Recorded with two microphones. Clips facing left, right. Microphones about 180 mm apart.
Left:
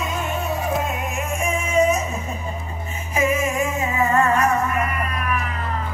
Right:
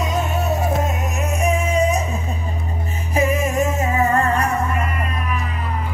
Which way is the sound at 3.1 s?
40° right (ahead or behind).